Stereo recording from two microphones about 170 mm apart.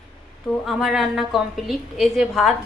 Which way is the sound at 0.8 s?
Centre (ahead or behind).